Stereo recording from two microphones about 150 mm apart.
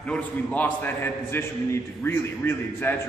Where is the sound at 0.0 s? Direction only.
10° left (ahead or behind).